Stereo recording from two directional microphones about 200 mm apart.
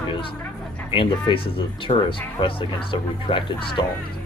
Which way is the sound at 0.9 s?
25° left (ahead or behind).